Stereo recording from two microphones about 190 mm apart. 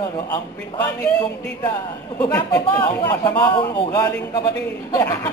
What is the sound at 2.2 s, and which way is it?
Speech, 15° left (ahead or behind).